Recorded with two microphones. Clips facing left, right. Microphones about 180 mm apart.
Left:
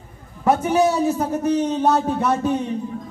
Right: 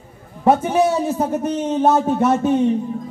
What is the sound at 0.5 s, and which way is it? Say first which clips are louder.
A man's voice: right 2 dB; 25° right (ahead or behind).